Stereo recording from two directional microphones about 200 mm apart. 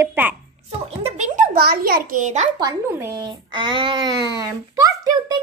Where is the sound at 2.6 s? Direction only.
15° right (ahead or behind).